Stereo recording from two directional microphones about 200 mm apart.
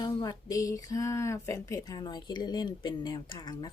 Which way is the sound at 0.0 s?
20° left (ahead or behind).